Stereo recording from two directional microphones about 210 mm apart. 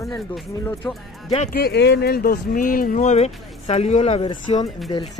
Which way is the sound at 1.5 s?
50° left (ahead or behind).